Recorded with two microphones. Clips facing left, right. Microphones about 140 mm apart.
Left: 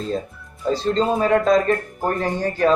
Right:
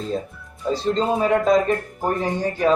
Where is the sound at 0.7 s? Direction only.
5° right (ahead or behind).